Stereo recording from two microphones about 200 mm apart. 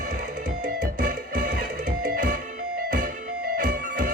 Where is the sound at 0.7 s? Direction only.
40° right (ahead or behind).